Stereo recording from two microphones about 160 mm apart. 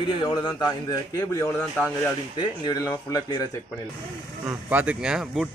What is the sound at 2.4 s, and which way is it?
A man's voice, 25° left (ahead or behind).